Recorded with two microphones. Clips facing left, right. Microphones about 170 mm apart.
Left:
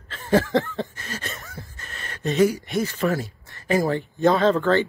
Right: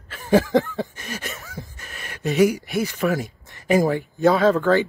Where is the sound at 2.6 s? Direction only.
10° right (ahead or behind).